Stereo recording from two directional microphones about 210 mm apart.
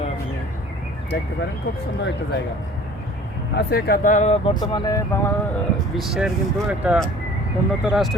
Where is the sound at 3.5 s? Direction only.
50° left (ahead or behind); by 4.5 s 30° left (ahead or behind).